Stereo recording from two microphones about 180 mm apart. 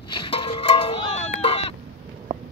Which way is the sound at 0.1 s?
30° left (ahead or behind).